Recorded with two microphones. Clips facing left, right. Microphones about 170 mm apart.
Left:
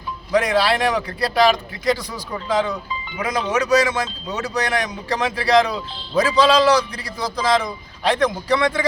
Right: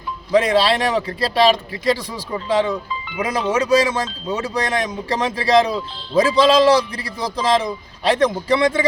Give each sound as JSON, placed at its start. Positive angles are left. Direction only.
{"t": 0.3, "sound": "a man's voice", "side_deg": -25}